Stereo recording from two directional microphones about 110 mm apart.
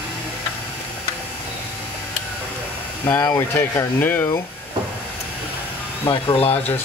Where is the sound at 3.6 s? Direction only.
15° left (ahead or behind).